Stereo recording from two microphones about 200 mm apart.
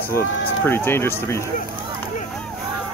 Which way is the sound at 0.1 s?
10° left (ahead or behind).